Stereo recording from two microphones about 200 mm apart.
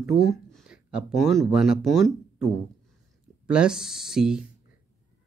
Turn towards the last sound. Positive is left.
turn(degrees=-5)  # may be behind; listen again after turning